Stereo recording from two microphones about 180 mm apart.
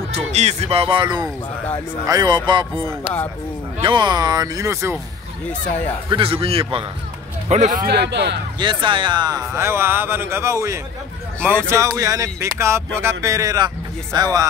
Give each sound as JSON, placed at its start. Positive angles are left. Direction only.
{"t": 0.1, "sound": "speech", "side_deg": -35}
{"t": 6.0, "sound": "a man's voice", "side_deg": -30}
{"t": 7.9, "sound": "speech", "side_deg": -70}
{"t": 8.5, "sound": "speech", "side_deg": -25}